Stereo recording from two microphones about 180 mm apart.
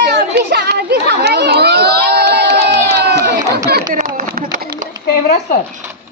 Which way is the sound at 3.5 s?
55° right (ahead or behind).